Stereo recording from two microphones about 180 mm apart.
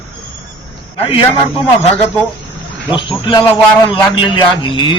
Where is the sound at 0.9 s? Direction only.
30° left (ahead or behind).